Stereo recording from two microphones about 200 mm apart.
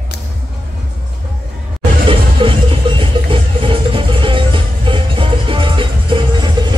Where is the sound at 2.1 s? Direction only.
25° right (ahead or behind).